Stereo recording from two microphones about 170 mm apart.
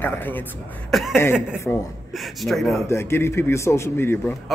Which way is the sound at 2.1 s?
Centre (ahead or behind).